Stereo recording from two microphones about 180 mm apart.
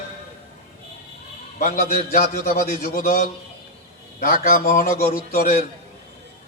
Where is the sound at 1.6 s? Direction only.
50° left (ahead or behind).